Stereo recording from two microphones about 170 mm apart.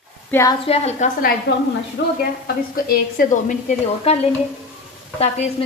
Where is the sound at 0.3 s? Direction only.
15° left (ahead or behind).